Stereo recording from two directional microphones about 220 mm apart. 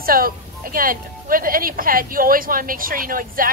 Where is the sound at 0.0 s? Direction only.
40° right (ahead or behind).